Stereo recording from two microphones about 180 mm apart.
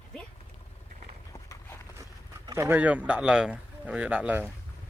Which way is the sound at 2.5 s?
10° right (ahead or behind).